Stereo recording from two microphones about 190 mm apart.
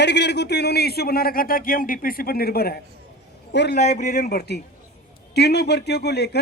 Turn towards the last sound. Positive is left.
turn(degrees=60)  # may be behind; listen again after turning